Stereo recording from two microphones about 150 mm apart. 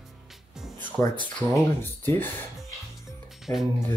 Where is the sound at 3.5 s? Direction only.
15° left (ahead or behind).